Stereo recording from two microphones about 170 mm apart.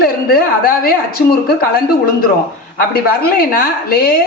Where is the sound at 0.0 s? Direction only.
60° left (ahead or behind).